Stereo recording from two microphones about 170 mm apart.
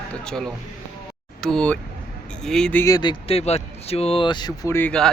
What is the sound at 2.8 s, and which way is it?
Speech, 25° left (ahead or behind).